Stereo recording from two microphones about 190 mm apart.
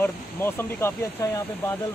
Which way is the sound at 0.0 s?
10° left (ahead or behind).